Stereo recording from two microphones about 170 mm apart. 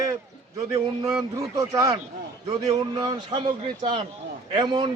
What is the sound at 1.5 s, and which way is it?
A man's voice, 20° right (ahead or behind).